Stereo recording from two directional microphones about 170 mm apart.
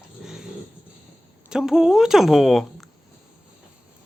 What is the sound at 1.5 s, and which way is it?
A woman's voice, 5° right (ahead or behind).